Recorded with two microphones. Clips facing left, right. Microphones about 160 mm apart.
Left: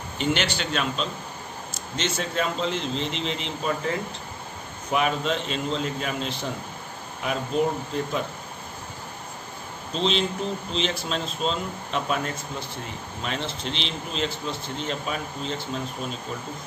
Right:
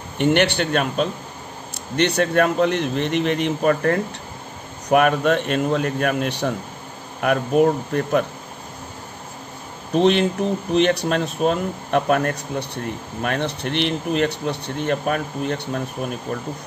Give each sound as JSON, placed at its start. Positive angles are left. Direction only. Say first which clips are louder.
{"t": 0.2, "sound": "speech", "louder": "right 8 dB", "side_deg": -60}
{"t": 9.9, "sound": "speech", "louder": "right 8 dB", "side_deg": -60}